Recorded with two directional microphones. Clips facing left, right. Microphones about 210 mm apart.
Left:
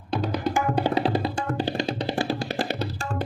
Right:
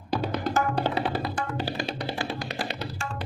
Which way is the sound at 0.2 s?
5° right (ahead or behind).